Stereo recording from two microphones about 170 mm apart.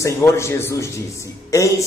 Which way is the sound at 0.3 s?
15° left (ahead or behind).